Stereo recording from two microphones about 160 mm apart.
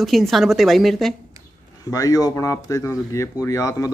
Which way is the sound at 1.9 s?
20° left (ahead or behind).